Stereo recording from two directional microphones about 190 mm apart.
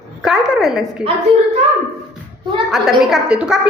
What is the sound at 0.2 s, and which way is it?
Speech, centre (ahead or behind).